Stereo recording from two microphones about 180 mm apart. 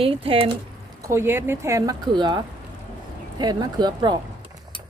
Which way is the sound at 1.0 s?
15° right (ahead or behind).